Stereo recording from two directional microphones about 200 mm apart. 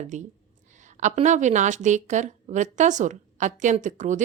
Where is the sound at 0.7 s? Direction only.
40° right (ahead or behind).